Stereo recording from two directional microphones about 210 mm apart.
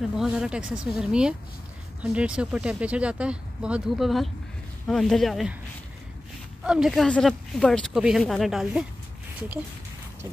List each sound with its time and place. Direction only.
0.0 s speech: centre (ahead or behind)
6.6 s speech: 5° right (ahead or behind)